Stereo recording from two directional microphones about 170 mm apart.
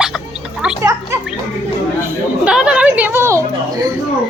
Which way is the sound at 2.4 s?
5° right (ahead or behind).